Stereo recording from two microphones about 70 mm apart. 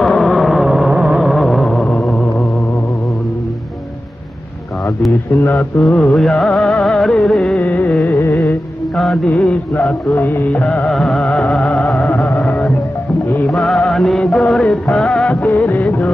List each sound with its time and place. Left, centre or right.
0.0 s a sound: centre
5.3 s music: left
6.0 s music: centre
7.5 s carnatic music: left
8.9 s music: centre
10.1 s music: left
10.6 s music: centre
10.9 s music: centre
13.5 s music: centre
15.4 s music: left